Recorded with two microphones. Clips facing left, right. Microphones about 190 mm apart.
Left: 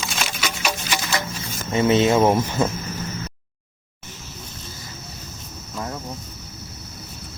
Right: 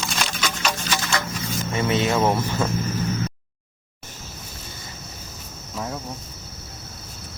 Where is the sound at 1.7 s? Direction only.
25° left (ahead or behind).